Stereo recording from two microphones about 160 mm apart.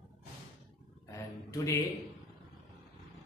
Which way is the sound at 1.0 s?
20° left (ahead or behind).